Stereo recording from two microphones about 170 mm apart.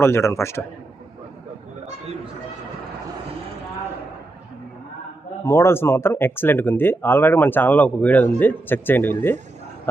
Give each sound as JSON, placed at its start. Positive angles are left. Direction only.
{"t": 0.0, "sound": "speech", "side_deg": 15}
{"t": 5.5, "sound": "speech", "side_deg": 15}